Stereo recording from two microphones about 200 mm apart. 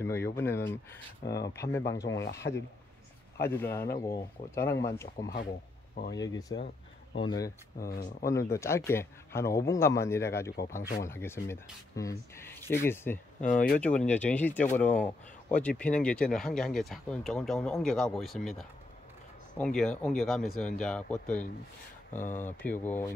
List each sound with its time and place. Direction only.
0.0 s speech: 10° left (ahead or behind)
7.8 s speech: 45° left (ahead or behind)
8.3 s speech: 15° left (ahead or behind)
13.4 s speech: 40° left (ahead or behind)
13.9 s speech: 5° left (ahead or behind)